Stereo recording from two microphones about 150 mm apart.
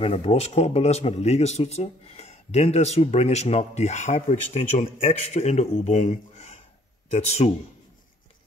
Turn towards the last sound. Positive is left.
turn(degrees=45)  # may be behind; listen again after turning